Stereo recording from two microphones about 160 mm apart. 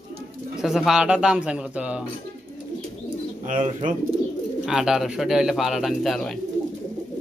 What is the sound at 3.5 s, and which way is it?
Speech, 50° right (ahead or behind).